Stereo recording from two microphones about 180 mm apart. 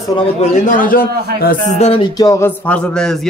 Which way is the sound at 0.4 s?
45° left (ahead or behind).